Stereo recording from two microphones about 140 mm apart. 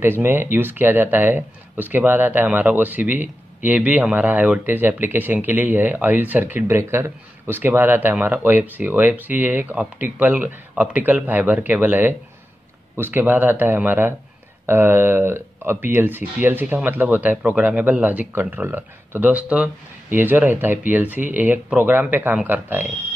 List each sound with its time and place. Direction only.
0.0 s speech: 15° right (ahead or behind)